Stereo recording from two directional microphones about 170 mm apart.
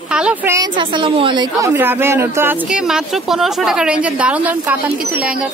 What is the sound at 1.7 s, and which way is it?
A woman's voice, 10° right (ahead or behind).